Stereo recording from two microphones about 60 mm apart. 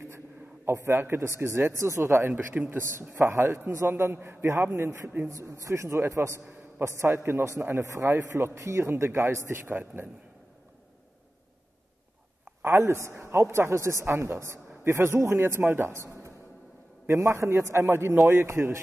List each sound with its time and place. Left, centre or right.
0.7 s a man's voice: right
2.5 s a man's voice: right
3.3 s a man's voice: right
5.3 s a man's voice: right
9.7 s a man's voice: right
12.6 s a man's voice: right